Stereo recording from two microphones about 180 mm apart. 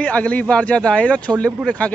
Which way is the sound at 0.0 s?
5° left (ahead or behind).